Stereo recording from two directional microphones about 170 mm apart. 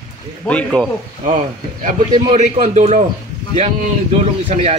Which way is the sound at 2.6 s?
45° right (ahead or behind).